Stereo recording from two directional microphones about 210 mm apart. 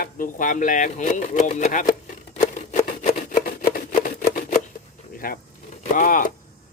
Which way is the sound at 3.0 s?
40° left (ahead or behind).